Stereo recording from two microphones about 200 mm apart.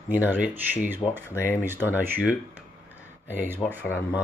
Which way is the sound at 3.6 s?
5° left (ahead or behind).